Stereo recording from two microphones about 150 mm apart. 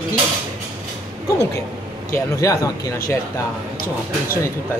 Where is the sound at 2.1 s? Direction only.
20° left (ahead or behind).